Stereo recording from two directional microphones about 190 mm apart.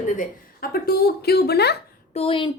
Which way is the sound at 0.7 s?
55° left (ahead or behind).